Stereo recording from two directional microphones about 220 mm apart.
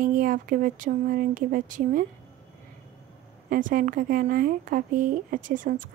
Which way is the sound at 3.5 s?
40° right (ahead or behind).